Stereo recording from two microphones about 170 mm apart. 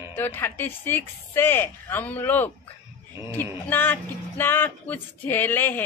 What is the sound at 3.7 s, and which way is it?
Speech, 10° left (ahead or behind).